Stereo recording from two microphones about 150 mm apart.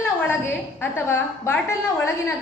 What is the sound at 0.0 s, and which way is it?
A woman's voice, 15° left (ahead or behind).